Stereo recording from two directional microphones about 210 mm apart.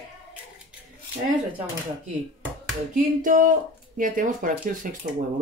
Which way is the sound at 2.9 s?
40° right (ahead or behind).